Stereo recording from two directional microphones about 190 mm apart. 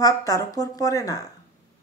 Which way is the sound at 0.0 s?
20° left (ahead or behind).